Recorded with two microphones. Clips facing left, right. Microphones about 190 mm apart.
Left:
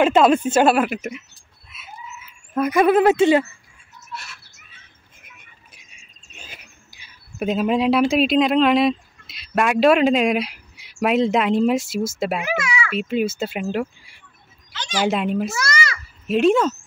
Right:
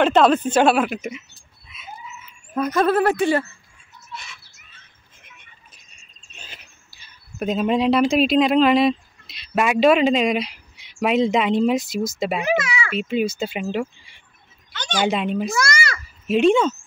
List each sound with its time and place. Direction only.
0.0 s speech: 5° left (ahead or behind)
1.7 s a sound: 5° left (ahead or behind)
4.1 s bird: 5° left (ahead or behind)
5.2 s vehicle: 5° left (ahead or behind)
6.3 s speech: 10° left (ahead or behind)
12.5 s a sound: 35° right (ahead or behind)
12.9 s speech: 5° left (ahead or behind)